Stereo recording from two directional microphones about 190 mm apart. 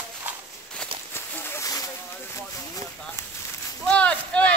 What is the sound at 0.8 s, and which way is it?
Walk, 5° left (ahead or behind).